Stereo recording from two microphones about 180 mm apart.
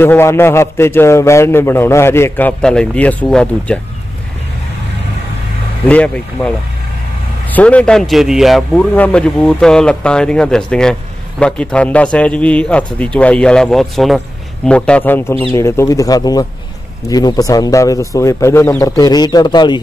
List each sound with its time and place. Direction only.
0.0 s a man's voice: 15° left (ahead or behind)
5.9 s a man's voice: 5° left (ahead or behind)
7.5 s a man's voice: 5° left (ahead or behind); by 19.8 s 25° left (ahead or behind)